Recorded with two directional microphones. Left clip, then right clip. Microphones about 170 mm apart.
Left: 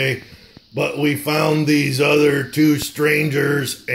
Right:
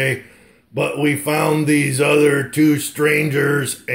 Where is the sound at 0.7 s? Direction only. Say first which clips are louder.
Right 1 dB; 5° left (ahead or behind).